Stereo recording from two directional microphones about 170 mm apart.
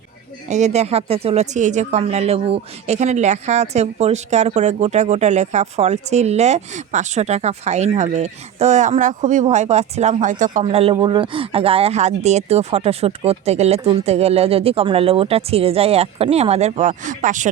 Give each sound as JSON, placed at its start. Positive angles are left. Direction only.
{"t": 0.5, "sound": "speech", "side_deg": -40}